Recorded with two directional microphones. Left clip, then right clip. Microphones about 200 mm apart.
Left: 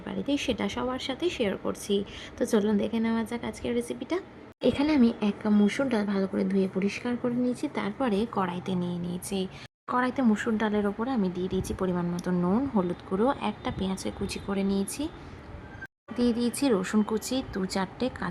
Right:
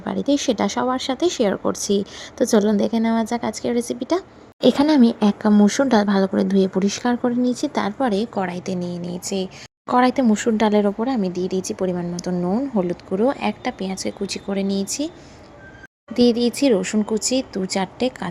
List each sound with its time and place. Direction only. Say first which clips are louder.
0.3 s speech: right 9 dB; 20° right (ahead or behind)
4.6 s speech: right 9 dB; 30° right (ahead or behind); by 9.5 s 10° right (ahead or behind)
9.8 s speech: right 10 dB; 25° right (ahead or behind)
16.1 s speech: right 10 dB; 20° right (ahead or behind)